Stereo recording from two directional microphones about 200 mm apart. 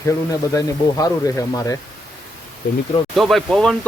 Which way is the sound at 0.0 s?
15° left (ahead or behind).